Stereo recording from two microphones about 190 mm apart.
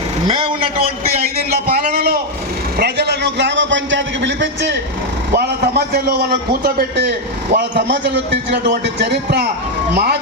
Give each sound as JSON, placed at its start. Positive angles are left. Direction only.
{"t": 0.3, "sound": "a man's voice", "side_deg": -25}
{"t": 1.6, "sound": "a man's voice", "side_deg": -55}
{"t": 5.3, "sound": "a man's voice", "side_deg": -55}
{"t": 7.5, "sound": "a man's voice", "side_deg": -70}